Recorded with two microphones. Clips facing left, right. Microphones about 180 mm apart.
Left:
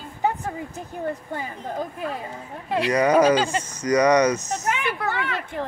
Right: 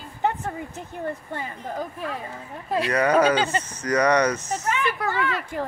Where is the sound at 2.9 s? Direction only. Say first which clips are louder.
Left 2 dB; 15° left (ahead or behind).